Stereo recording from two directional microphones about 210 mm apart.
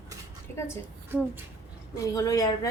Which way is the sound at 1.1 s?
10° right (ahead or behind).